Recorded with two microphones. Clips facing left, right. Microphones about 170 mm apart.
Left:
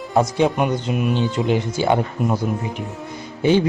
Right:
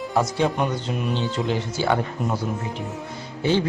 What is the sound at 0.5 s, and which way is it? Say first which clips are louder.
Speech: left 4 dB; 10° left (ahead or behind).